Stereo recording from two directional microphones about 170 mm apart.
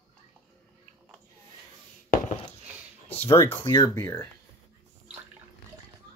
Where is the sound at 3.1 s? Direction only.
15° left (ahead or behind).